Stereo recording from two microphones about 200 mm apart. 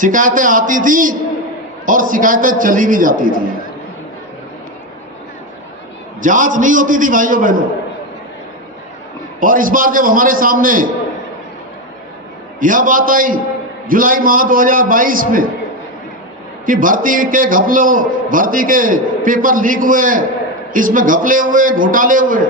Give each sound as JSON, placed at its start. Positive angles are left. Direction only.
{"t": 0.0, "sound": "a man's voice", "side_deg": -40}
{"t": 6.2, "sound": "a man's voice", "side_deg": -40}
{"t": 9.4, "sound": "a man's voice", "side_deg": -45}
{"t": 12.5, "sound": "a man's voice", "side_deg": -40}
{"t": 16.6, "sound": "a man's voice", "side_deg": -40}